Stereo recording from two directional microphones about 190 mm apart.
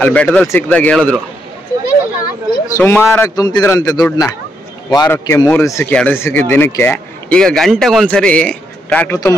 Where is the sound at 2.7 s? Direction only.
15° left (ahead or behind).